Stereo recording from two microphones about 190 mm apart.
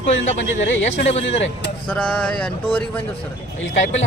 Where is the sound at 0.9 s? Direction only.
35° left (ahead or behind).